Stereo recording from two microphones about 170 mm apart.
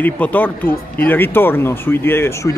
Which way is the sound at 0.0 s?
10° left (ahead or behind).